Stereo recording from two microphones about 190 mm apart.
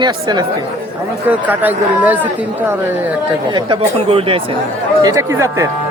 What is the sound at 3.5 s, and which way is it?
Speech, 30° right (ahead or behind).